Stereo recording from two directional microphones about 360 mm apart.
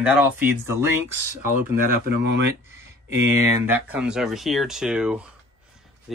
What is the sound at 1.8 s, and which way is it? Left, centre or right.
Speech, right.